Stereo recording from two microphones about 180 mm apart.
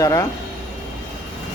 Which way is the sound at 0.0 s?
20° left (ahead or behind).